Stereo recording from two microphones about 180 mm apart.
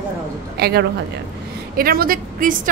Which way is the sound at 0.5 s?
65° right (ahead or behind).